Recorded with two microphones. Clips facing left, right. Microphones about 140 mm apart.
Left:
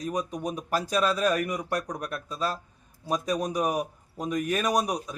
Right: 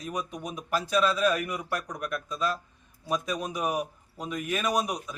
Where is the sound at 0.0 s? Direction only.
35° left (ahead or behind).